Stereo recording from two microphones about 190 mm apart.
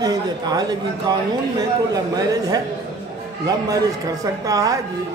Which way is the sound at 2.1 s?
20° right (ahead or behind).